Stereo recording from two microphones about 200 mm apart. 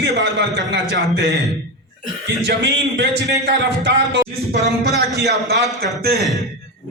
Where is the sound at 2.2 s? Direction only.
60° right (ahead or behind).